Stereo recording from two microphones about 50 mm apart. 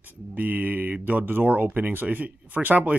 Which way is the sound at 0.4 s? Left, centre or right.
Right.